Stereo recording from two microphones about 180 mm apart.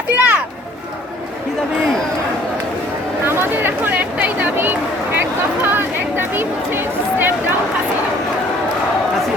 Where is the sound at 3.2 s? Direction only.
10° right (ahead or behind).